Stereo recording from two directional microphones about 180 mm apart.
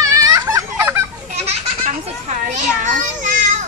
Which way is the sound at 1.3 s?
35° right (ahead or behind).